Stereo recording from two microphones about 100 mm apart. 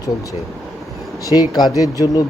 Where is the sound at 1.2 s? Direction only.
35° left (ahead or behind).